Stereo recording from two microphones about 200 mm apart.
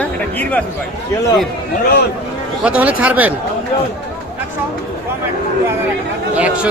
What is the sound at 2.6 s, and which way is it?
Speech, 5° right (ahead or behind).